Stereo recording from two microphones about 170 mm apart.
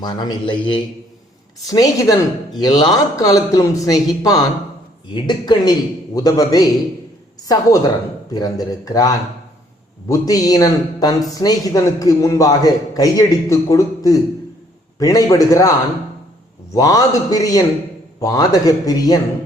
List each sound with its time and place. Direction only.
0.0 s a man's voice: 25° left (ahead or behind)
16.7 s a man's voice: 20° left (ahead or behind)